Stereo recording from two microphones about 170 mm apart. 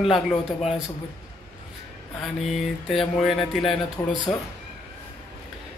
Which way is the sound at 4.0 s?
25° left (ahead or behind).